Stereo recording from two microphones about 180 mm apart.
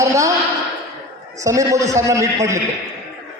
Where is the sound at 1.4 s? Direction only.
15° right (ahead or behind).